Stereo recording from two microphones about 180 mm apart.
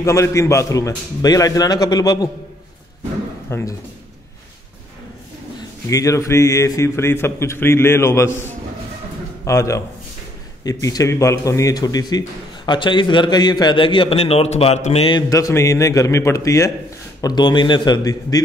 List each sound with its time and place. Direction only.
0.0 s a man's voice: 15° left (ahead or behind)
3.4 s speech: 15° left (ahead or behind)
5.9 s a man's voice: 20° left (ahead or behind)